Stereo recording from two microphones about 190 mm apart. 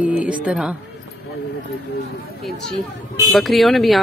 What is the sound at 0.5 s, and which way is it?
Speech, 5° right (ahead or behind).